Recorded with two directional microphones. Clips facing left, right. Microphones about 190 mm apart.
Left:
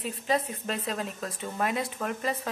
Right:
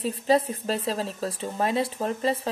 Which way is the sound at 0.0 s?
35° right (ahead or behind).